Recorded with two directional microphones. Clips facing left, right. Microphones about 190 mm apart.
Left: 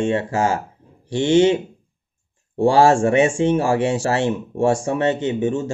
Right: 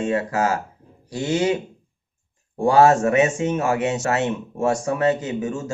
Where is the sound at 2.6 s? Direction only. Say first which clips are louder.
Left 1 dB; 30° left (ahead or behind).